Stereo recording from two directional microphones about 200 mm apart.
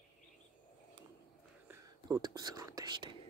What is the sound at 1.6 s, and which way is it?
Whispering, 20° right (ahead or behind).